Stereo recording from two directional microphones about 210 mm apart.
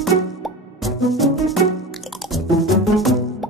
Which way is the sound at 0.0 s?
Centre (ahead or behind).